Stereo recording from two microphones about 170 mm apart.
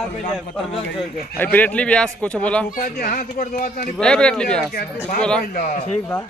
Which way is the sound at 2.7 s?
50° left (ahead or behind).